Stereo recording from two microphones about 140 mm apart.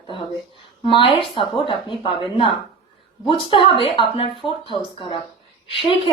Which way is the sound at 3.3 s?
40° left (ahead or behind).